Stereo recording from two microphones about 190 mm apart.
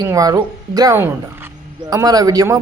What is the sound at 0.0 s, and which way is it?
Speech, 20° right (ahead or behind).